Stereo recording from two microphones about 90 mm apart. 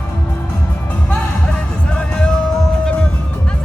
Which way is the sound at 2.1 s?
10° left (ahead or behind).